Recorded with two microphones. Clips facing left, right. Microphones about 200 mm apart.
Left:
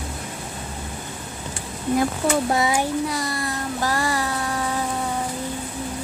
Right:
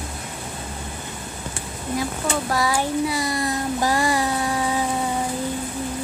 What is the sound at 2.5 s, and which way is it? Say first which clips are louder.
Speech: left 1 dB; 20° left (ahead or behind).